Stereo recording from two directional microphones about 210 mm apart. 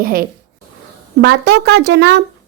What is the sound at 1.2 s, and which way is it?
Speech, 50° right (ahead or behind).